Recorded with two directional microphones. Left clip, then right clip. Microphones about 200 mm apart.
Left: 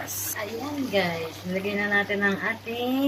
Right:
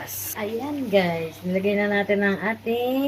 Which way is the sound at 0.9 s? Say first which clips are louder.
Right 5 dB; 20° right (ahead or behind).